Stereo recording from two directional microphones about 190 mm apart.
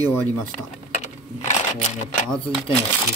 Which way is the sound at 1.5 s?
40° left (ahead or behind).